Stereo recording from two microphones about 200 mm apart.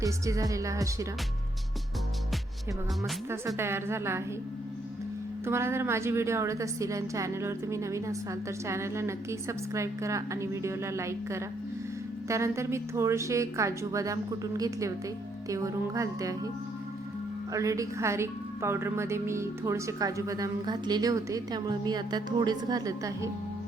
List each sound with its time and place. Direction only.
0.0 s a woman's voice: 15° right (ahead or behind)
3.2 s a woman's voice: 10° right (ahead or behind)
5.5 s a woman's voice: 10° right (ahead or behind)
17.5 s a woman's voice: 15° right (ahead or behind)